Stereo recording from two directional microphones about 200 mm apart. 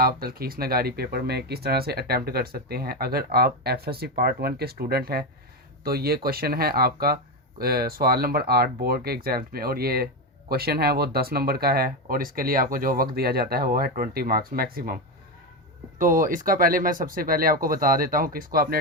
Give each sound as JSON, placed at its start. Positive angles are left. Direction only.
{"t": 0.0, "sound": "speech", "side_deg": -50}
{"t": 16.0, "sound": "speech", "side_deg": -40}